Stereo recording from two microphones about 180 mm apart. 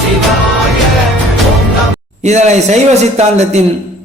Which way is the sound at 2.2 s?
40° right (ahead or behind).